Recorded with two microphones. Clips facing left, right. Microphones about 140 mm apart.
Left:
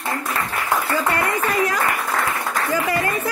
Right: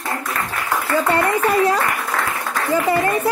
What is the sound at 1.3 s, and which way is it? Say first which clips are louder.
Speech: right 4 dB; 30° right (ahead or behind).